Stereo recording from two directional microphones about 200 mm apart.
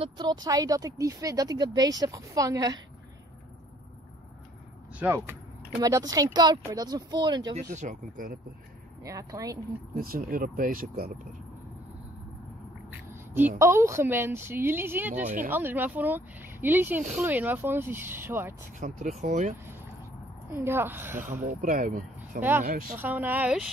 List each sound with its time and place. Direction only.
0.0 s speech: 20° right (ahead or behind)
4.9 s speech: 10° right (ahead or behind)
7.7 s speech: 40° right (ahead or behind)
9.0 s speech: 15° right (ahead or behind)
9.9 s speech: 45° right (ahead or behind)
12.9 s quack: 10° right (ahead or behind)
13.6 s speech: 15° right (ahead or behind)
15.2 s speech: 40° right (ahead or behind)
15.5 s speech: 10° right (ahead or behind)
18.8 s speech: 40° right (ahead or behind)
20.5 s speech: 10° right (ahead or behind)
21.5 s speech: 40° right (ahead or behind)
22.4 s speech: 10° right (ahead or behind)